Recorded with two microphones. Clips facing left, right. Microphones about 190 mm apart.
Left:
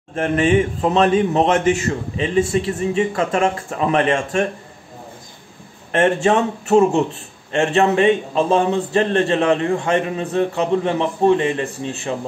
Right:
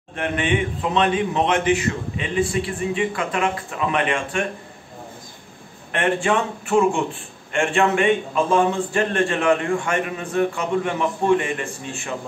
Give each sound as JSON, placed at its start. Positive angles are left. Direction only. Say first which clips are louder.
{"t": 0.1, "sound": "a man's voice", "louder": "left 6 dB", "side_deg": 40}
{"t": 5.9, "sound": "speech", "louder": "left 5 dB", "side_deg": 40}
{"t": 8.5, "sound": "a man's voice", "louder": "left 1 dB", "side_deg": 25}